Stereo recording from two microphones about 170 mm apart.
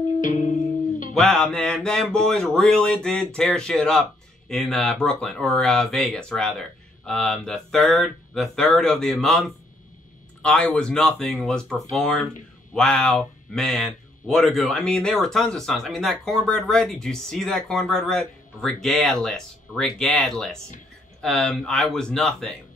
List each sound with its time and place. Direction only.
0.2 s music: 50° left (ahead or behind)
1.1 s speech: 5° left (ahead or behind)